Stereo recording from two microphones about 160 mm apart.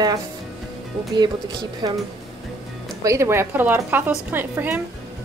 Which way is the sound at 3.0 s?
20° right (ahead or behind).